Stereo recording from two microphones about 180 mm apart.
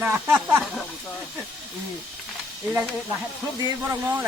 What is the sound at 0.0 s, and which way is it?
Speech, 10° right (ahead or behind).